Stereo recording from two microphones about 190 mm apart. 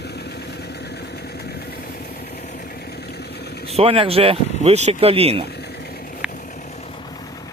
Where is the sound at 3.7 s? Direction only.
30° right (ahead or behind).